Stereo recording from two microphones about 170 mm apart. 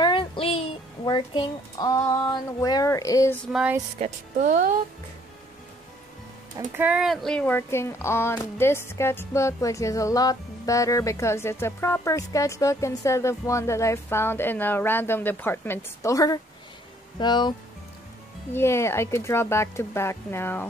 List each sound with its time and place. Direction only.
0.0 s a child's voice: 30° left (ahead or behind)
4.0 s speech: 45° right (ahead or behind)
6.8 s speech: 5° right (ahead or behind); by 17.6 s 25° left (ahead or behind)
18.5 s speech: 15° left (ahead or behind)